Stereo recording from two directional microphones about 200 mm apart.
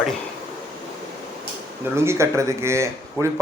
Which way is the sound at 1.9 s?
15° right (ahead or behind).